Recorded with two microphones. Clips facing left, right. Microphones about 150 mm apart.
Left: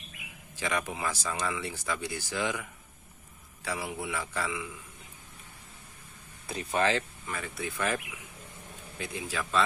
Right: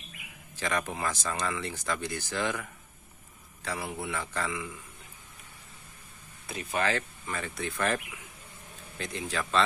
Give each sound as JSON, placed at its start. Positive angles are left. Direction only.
{"t": 0.6, "sound": "speech", "side_deg": 10}
{"t": 6.7, "sound": "speech", "side_deg": 20}
{"t": 7.2, "sound": "speech", "side_deg": 5}